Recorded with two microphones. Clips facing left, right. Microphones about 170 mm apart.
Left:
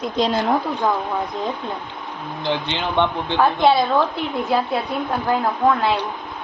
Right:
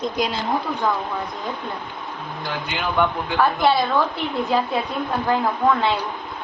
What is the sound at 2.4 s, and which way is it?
A man's voice, 25° left (ahead or behind).